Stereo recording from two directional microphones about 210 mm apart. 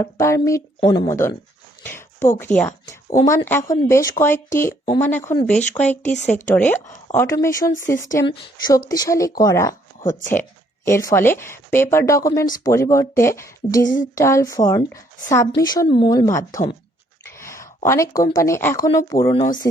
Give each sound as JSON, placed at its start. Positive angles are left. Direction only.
{"t": 0.0, "sound": "speech", "side_deg": 15}
{"t": 10.8, "sound": "speech", "side_deg": 10}
{"t": 17.2, "sound": "a sound", "side_deg": 15}
{"t": 17.8, "sound": "speech", "side_deg": 15}